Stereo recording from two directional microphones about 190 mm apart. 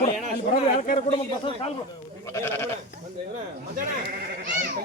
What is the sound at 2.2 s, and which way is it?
Sheep, 15° left (ahead or behind).